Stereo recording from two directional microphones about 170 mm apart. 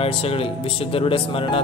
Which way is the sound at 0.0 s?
35° left (ahead or behind).